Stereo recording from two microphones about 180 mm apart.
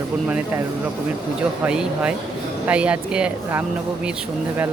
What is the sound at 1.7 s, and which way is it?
Speech, 5° right (ahead or behind).